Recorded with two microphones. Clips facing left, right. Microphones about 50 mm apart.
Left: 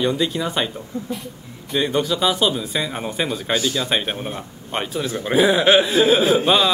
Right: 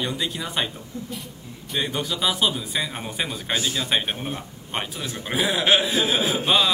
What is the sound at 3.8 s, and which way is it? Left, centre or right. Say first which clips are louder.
Speech: left 2 dB; centre.